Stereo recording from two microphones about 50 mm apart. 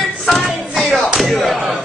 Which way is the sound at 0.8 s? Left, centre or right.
Centre.